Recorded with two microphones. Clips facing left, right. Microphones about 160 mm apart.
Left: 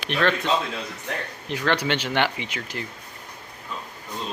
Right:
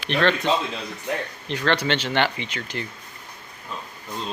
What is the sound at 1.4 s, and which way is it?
Speech, 10° left (ahead or behind).